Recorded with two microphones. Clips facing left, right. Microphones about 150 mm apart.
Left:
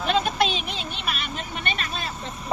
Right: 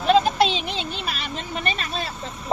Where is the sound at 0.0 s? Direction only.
35° right (ahead or behind).